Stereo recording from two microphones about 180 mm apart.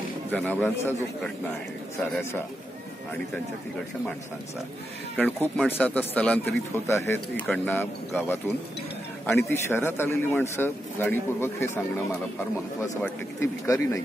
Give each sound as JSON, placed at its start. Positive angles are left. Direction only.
{"t": 0.3, "sound": "a man's voice", "side_deg": 10}
{"t": 5.1, "sound": "a man's voice", "side_deg": 10}
{"t": 9.2, "sound": "a man's voice", "side_deg": 5}